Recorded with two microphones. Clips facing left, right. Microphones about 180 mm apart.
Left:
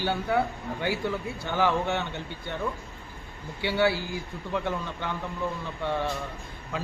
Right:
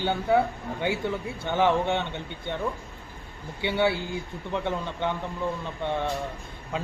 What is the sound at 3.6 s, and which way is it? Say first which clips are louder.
Speech: even; 20° right (ahead or behind).